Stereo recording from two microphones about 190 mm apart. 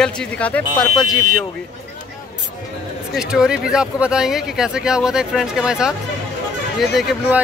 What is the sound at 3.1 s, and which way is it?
A man's voice, 5° right (ahead or behind).